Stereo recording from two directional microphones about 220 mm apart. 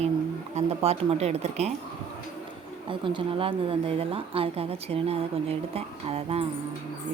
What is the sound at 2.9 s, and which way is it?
A woman's voice, 25° right (ahead or behind).